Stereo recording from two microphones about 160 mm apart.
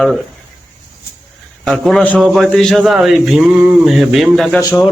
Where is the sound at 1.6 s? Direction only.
Centre (ahead or behind).